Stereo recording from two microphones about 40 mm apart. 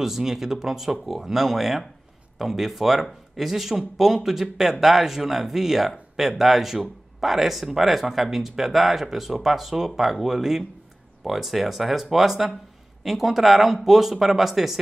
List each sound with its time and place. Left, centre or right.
0.0 s speech: centre